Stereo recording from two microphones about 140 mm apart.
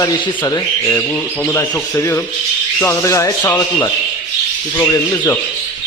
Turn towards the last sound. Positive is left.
turn(degrees=20)  # may be behind; listen again after turning